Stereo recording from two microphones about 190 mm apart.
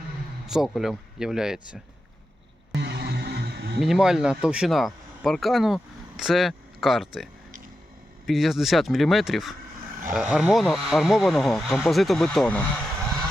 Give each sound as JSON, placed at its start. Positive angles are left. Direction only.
{"t": 0.4, "sound": "speech", "side_deg": 0}
{"t": 2.7, "sound": "music", "side_deg": -60}
{"t": 3.8, "sound": "speech", "side_deg": 0}
{"t": 8.3, "sound": "speech", "side_deg": 0}